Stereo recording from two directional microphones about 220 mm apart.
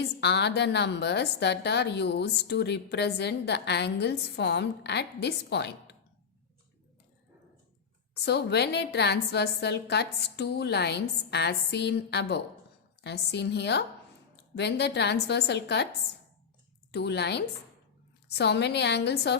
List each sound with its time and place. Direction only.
0.0 s a woman's voice: 50° left (ahead or behind)
8.2 s a woman's voice: 50° left (ahead or behind)
16.9 s a woman's voice: 50° left (ahead or behind)